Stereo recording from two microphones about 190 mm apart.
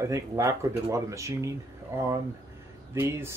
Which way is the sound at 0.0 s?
15° right (ahead or behind).